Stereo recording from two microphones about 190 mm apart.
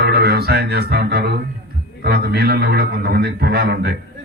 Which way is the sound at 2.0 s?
55° right (ahead or behind).